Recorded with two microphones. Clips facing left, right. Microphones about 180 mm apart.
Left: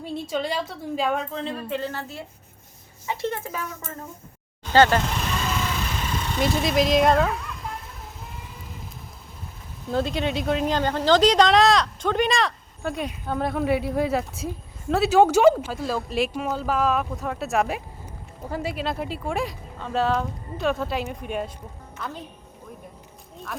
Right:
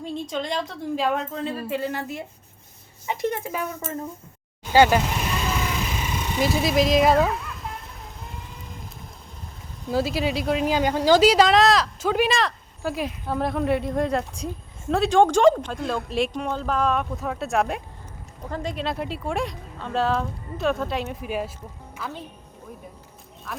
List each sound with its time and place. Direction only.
0.0 s a woman's voice: 5° left (ahead or behind); by 3.7 s 15° right (ahead or behind)
4.7 s a woman's voice: 10° right (ahead or behind)
6.0 s vehicle: 5° right (ahead or behind)
9.9 s a woman's voice: 5° right (ahead or behind)
23.5 s speech: centre (ahead or behind)